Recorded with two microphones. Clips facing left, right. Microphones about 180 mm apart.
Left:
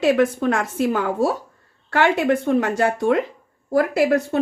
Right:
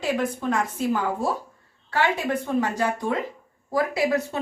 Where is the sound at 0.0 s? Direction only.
75° left (ahead or behind).